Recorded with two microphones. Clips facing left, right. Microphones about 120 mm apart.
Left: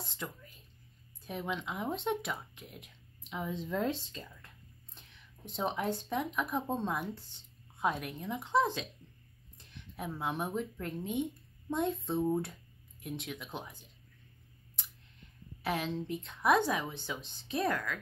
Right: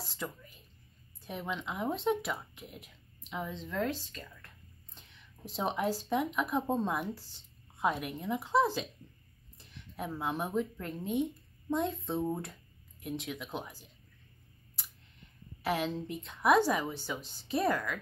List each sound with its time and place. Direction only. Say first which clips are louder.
0.0 s a sound: right 2 dB; 5° right (ahead or behind)
1.2 s a woman's voice: even; centre (ahead or behind)
3.6 s speech: left 1 dB; 15° left (ahead or behind)
5.5 s a woman's voice: right 2 dB; 5° right (ahead or behind)
15.6 s a woman's voice: right 2 dB; centre (ahead or behind)